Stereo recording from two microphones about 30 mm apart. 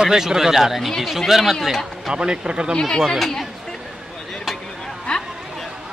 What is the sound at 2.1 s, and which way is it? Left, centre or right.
Speech, right.